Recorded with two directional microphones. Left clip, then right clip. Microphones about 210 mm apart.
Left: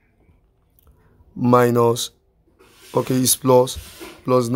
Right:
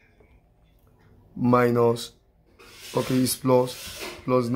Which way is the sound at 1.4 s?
45° left (ahead or behind).